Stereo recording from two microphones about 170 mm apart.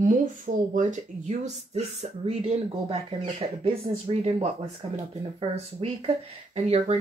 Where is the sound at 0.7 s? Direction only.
50° right (ahead or behind).